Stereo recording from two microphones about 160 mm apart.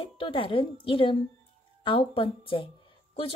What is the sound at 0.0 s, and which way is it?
A woman's voice, 35° left (ahead or behind).